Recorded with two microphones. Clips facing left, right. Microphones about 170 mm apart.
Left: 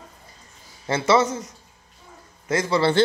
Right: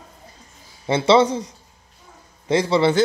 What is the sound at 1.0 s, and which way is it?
A man's voice, 30° right (ahead or behind).